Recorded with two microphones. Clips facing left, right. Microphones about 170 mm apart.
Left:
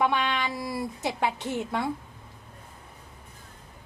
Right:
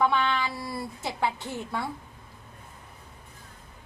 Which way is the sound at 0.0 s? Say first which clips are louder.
Right 1 dB; 15° left (ahead or behind).